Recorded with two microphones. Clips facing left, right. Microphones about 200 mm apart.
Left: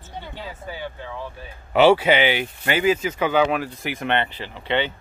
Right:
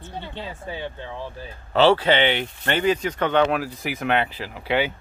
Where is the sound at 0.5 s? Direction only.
25° right (ahead or behind).